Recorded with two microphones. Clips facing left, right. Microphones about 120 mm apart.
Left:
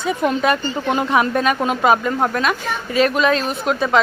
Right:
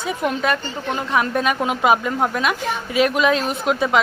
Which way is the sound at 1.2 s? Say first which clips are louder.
Right 1 dB; 5° right (ahead or behind).